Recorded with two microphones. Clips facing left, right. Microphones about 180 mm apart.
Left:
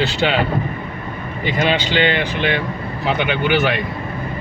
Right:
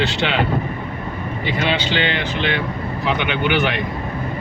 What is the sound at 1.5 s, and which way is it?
Speech, 45° left (ahead or behind).